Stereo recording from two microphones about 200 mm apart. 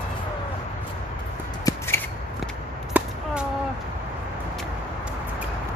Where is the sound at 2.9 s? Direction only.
10° right (ahead or behind).